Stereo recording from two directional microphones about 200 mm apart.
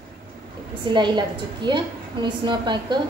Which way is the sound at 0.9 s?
20° right (ahead or behind).